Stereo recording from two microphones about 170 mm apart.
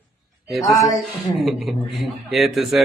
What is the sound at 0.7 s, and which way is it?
Speech, 20° left (ahead or behind).